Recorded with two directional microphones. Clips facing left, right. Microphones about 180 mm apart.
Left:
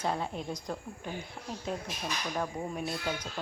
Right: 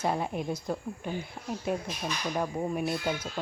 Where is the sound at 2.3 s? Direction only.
10° right (ahead or behind).